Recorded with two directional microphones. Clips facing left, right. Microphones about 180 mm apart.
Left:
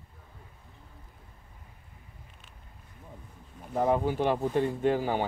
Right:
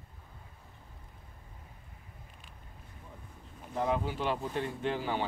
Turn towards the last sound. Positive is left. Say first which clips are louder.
# left 6 dB
turn(degrees=45)  # may be behind; listen again after turning